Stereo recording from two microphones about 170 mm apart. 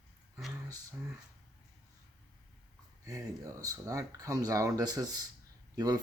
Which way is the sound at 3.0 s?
20° right (ahead or behind).